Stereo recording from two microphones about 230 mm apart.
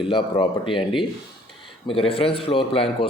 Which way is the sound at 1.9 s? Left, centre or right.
Left.